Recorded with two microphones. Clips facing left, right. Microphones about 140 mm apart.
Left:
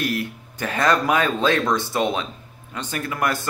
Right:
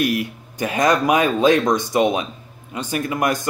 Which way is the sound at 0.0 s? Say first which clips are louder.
Right 4 dB; 15° right (ahead or behind).